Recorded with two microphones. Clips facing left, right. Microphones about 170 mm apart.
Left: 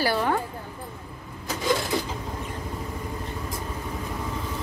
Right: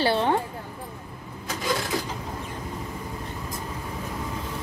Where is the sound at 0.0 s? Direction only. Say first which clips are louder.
Right 2 dB; 25° right (ahead or behind).